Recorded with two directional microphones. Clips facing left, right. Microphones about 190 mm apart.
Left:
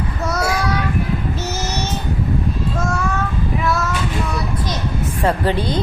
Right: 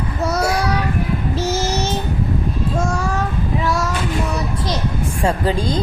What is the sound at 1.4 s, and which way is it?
Child singing, 30° right (ahead or behind).